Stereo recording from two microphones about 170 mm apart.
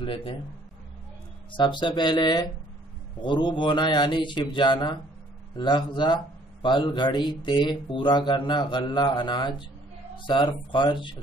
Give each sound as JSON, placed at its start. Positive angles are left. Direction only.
{"t": 0.0, "sound": "speech", "side_deg": 30}
{"t": 1.5, "sound": "speech", "side_deg": 30}